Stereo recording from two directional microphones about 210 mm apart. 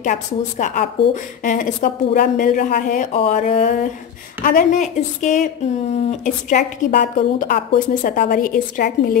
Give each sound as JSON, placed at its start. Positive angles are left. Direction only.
{"t": 0.0, "sound": "speech", "side_deg": 35}